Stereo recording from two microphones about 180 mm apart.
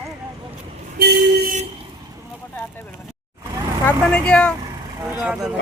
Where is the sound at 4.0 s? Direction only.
5° left (ahead or behind).